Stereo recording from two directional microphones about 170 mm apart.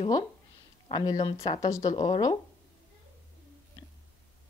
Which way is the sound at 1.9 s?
35° left (ahead or behind).